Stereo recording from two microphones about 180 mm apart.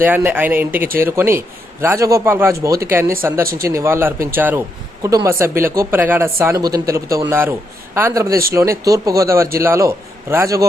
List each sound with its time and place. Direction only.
0.0 s speech: 10° right (ahead or behind)